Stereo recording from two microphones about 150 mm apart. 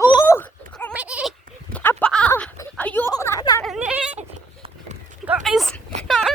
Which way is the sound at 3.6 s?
5° right (ahead or behind).